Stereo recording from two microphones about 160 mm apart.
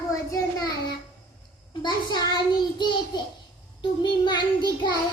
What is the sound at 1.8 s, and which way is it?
A child's voice, 25° left (ahead or behind).